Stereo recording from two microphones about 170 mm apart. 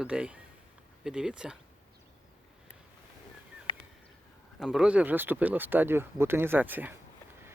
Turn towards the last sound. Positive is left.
turn(degrees=-10)  # may be behind; listen again after turning